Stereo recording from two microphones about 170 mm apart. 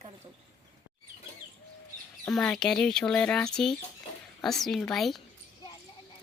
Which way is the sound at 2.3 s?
5° left (ahead or behind).